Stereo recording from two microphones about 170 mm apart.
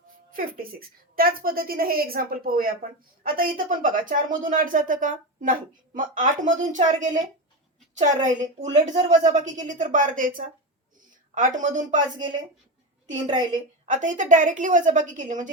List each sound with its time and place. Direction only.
0.1 s a woman's voice: 55° right (ahead or behind)
11.9 s speech: 25° right (ahead or behind)
13.8 s speech: 50° right (ahead or behind)